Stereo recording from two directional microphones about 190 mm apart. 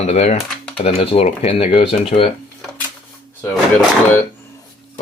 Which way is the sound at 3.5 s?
5° left (ahead or behind).